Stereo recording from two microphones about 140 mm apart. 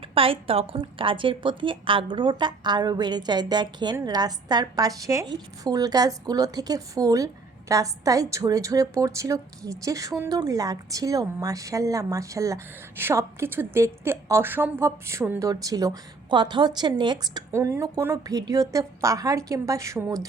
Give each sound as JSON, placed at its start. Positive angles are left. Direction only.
{"t": 0.1, "sound": "a woman's voice", "side_deg": -40}